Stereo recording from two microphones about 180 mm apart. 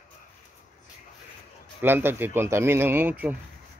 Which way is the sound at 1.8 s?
10° right (ahead or behind).